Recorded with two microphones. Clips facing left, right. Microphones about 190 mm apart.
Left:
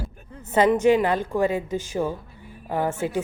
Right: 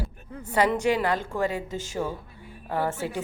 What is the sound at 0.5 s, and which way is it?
A woman's voice, 20° left (ahead or behind).